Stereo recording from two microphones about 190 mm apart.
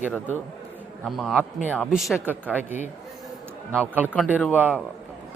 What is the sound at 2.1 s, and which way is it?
Speech, 10° left (ahead or behind).